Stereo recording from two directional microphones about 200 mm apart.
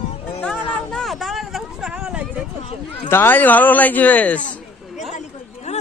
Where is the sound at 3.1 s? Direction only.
10° left (ahead or behind).